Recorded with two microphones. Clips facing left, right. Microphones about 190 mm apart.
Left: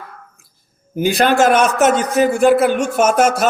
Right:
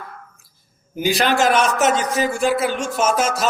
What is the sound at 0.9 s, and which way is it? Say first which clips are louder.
A man's voice: left 4 dB; 50° left (ahead or behind).